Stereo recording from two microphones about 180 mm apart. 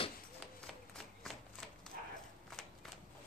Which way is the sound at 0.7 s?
Centre (ahead or behind).